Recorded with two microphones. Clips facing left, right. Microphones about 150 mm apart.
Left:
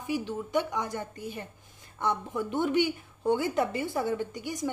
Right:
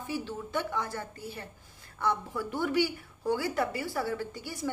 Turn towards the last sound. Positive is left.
turn(degrees=15)  # may be behind; listen again after turning